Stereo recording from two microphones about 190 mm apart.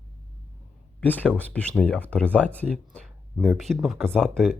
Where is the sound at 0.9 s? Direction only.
10° left (ahead or behind).